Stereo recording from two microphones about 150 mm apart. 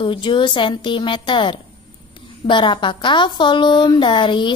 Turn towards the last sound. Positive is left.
turn(degrees=30)  # may be behind; listen again after turning